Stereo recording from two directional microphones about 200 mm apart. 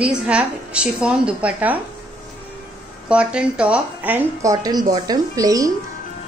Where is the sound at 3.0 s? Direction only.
5° right (ahead or behind).